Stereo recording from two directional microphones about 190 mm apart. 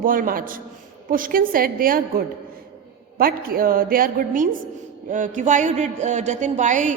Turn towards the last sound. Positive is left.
turn(degrees=-40)  # may be behind; listen again after turning